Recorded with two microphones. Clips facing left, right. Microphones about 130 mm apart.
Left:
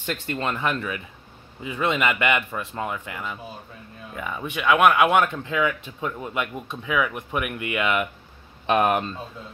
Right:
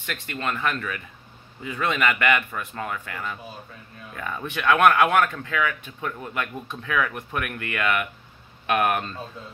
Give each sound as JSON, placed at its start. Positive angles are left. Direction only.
{"t": 0.0, "sound": "a man's voice", "side_deg": 25}